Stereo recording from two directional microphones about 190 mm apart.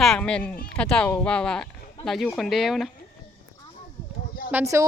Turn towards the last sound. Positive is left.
turn(degrees=-15)  # may be behind; listen again after turning